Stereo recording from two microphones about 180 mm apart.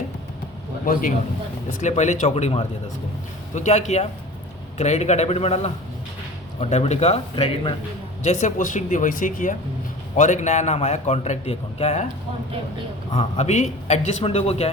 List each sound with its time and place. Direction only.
1.8 s a man's voice: 40° left (ahead or behind)
13.1 s a man's voice: 40° left (ahead or behind)